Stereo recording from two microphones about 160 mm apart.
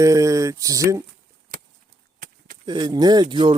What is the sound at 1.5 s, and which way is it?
Chop, 65° right (ahead or behind).